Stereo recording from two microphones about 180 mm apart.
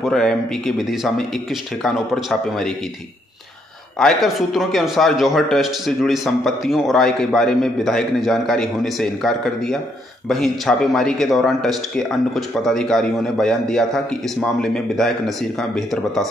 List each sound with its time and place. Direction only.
0.0 s speech: centre (ahead or behind)
4.0 s speech: centre (ahead or behind)